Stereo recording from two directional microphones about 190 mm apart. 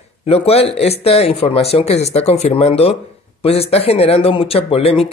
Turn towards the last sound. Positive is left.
turn(degrees=30)  # may be behind; listen again after turning